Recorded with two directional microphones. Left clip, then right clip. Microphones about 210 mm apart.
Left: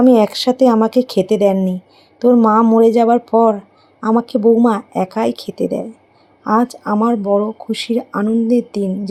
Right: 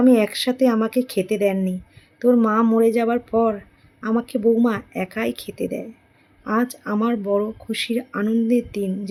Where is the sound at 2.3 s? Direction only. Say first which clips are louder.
Left 7 dB; 15° left (ahead or behind).